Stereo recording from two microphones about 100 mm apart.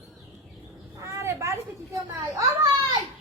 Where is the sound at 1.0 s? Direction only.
30° right (ahead or behind).